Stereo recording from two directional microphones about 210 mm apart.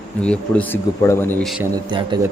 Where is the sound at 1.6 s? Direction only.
20° right (ahead or behind).